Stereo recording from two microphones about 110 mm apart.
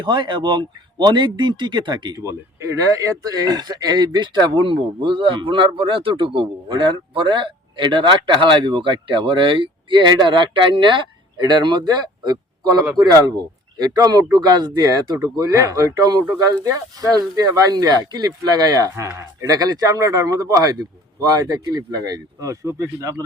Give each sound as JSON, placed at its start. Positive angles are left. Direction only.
{"t": 0.0, "sound": "speech", "side_deg": -45}
{"t": 2.1, "sound": "speech", "side_deg": -30}
{"t": 13.7, "sound": "speech", "side_deg": -35}